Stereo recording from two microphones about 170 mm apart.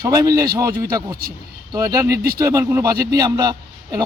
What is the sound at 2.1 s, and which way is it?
Speech, 65° right (ahead or behind).